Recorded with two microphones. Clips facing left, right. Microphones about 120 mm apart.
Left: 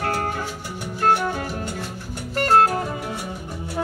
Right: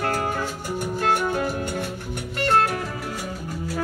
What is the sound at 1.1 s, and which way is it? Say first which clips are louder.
Music: right 2 dB; 50° right (ahead or behind).